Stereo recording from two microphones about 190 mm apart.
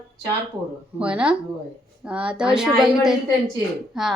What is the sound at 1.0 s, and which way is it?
A woman's voice, 5° right (ahead or behind).